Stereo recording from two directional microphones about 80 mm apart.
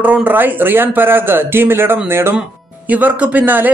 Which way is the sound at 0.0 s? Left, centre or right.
Centre.